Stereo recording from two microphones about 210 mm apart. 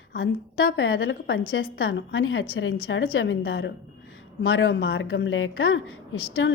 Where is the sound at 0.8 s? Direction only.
70° left (ahead or behind).